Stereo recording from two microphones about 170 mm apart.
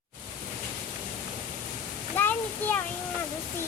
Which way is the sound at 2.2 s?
10° left (ahead or behind).